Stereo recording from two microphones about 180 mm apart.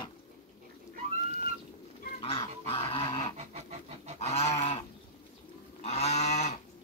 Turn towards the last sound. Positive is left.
turn(degrees=40)  # may be behind; listen again after turning